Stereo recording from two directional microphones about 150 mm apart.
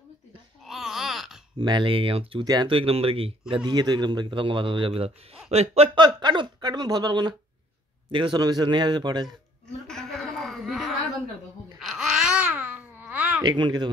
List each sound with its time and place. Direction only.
0.7 s a sound: centre (ahead or behind)
1.6 s a man's voice: 30° right (ahead or behind)
2.4 s speech: 25° right (ahead or behind)
2.7 s a man's voice: 40° right (ahead or behind)
5.9 s speech: 30° right (ahead or behind)
9.8 s chuckle: centre (ahead or behind)
11.8 s babbling: centre (ahead or behind)
13.4 s speech: 30° right (ahead or behind)